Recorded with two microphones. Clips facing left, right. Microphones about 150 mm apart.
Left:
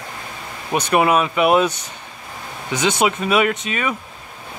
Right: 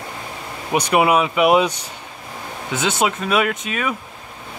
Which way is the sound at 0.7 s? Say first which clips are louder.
Even; 10° right (ahead or behind).